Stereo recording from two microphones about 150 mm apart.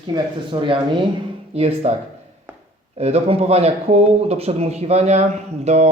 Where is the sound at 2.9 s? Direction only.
45° right (ahead or behind).